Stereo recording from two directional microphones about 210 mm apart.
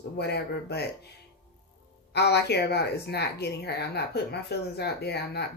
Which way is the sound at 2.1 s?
55° left (ahead or behind).